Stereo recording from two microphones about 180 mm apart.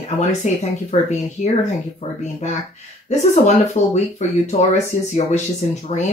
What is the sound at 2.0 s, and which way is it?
Speech, 30° left (ahead or behind).